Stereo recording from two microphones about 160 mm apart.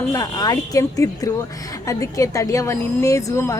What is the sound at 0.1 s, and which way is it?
A woman's voice, 25° left (ahead or behind).